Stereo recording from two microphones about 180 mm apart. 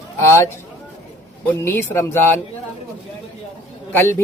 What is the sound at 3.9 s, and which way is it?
Speech, 10° left (ahead or behind).